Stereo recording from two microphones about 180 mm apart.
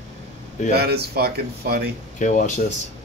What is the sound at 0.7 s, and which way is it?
Speech, 60° right (ahead or behind).